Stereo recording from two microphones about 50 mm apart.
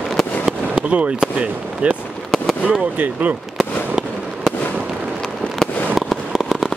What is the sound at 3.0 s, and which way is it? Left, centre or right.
Speech, right.